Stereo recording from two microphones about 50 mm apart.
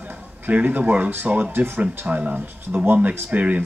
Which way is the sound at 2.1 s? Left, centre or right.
Right.